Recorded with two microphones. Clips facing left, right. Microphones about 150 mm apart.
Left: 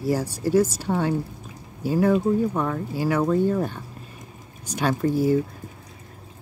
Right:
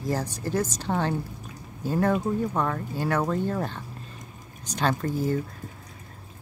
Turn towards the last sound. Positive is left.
turn(degrees=10)  # may be behind; listen again after turning